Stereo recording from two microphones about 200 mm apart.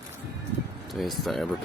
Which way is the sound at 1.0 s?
Centre (ahead or behind).